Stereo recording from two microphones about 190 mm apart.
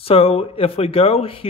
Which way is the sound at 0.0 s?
30° left (ahead or behind).